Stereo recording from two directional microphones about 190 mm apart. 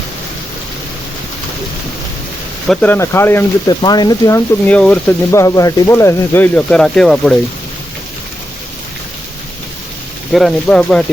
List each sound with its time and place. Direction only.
2.6 s speech: 10° left (ahead or behind)
10.3 s speech: centre (ahead or behind)